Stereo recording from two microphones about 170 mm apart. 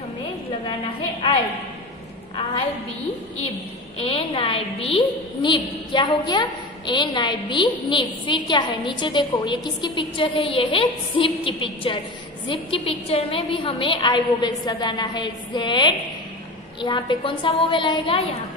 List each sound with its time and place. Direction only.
4.0 s a woman's voice: 35° left (ahead or behind)